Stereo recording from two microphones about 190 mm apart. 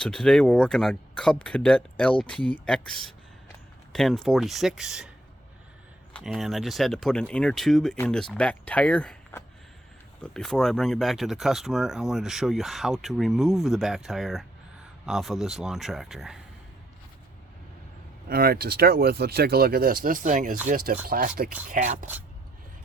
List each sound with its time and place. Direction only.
0.0 s speech: 5° left (ahead or behind)
3.9 s speech: centre (ahead or behind)
6.1 s speech: centre (ahead or behind)
18.3 s speech: 50° right (ahead or behind)
21.7 s speech: 40° right (ahead or behind)